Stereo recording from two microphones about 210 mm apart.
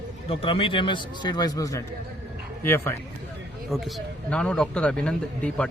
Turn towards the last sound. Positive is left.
turn(degrees=5)  # may be behind; listen again after turning